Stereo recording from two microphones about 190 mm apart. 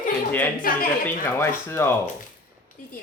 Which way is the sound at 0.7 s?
45° left (ahead or behind).